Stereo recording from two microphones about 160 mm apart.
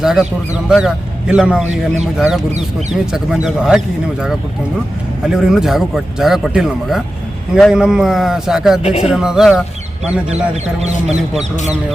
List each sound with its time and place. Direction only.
0.0 s a man's voice: 5° right (ahead or behind)
1.6 s speech: 45° right (ahead or behind)
2.1 s a man's voice: 5° right (ahead or behind)
8.8 s speech: 40° left (ahead or behind)
9.0 s a man's voice: 5° right (ahead or behind)